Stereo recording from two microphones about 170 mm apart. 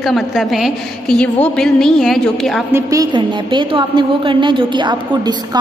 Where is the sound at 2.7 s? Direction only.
15° right (ahead or behind).